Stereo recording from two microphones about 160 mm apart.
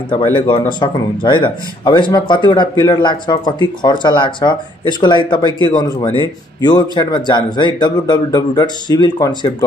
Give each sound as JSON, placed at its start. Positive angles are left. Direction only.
{"t": 0.1, "sound": "speech", "side_deg": 35}